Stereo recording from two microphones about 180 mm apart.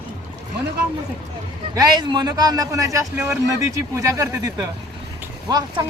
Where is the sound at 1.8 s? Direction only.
20° right (ahead or behind).